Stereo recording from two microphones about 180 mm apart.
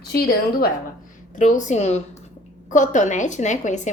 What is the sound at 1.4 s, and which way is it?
A woman's voice, 45° left (ahead or behind).